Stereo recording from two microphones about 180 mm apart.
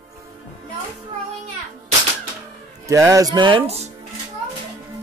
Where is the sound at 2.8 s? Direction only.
15° right (ahead or behind).